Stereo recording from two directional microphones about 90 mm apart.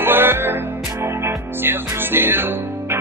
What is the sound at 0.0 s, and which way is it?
Music, 25° right (ahead or behind).